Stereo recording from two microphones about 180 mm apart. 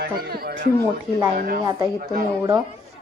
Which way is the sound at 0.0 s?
60° right (ahead or behind).